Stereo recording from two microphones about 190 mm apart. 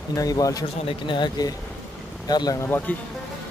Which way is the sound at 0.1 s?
20° left (ahead or behind).